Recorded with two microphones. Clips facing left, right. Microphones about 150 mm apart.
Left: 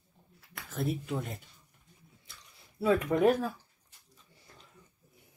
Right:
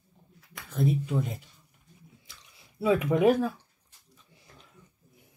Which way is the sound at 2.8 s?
10° right (ahead or behind).